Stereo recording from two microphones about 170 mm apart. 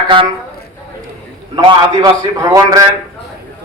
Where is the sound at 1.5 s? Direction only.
30° right (ahead or behind).